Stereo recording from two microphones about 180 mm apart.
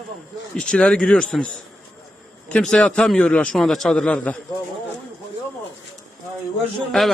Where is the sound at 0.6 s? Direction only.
5° left (ahead or behind).